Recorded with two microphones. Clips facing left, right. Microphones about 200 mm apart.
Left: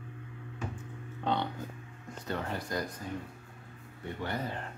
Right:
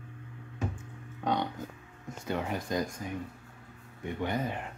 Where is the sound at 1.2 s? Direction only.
15° right (ahead or behind).